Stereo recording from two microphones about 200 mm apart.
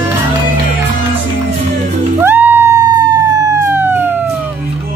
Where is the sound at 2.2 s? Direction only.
10° right (ahead or behind).